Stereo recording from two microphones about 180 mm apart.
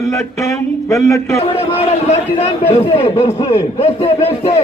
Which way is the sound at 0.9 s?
15° left (ahead or behind).